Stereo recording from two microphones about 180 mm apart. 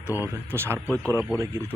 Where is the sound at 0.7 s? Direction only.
5° left (ahead or behind).